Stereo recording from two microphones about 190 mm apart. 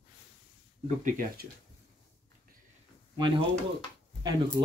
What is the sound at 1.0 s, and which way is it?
Speech, 45° right (ahead or behind).